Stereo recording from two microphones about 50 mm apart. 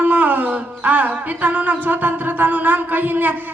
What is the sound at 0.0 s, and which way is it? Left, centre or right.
Speech, right.